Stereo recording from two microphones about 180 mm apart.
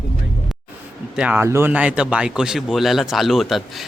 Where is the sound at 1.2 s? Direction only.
10° right (ahead or behind).